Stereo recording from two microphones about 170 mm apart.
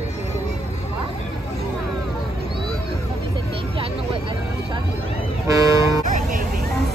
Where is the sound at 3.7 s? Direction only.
30° right (ahead or behind).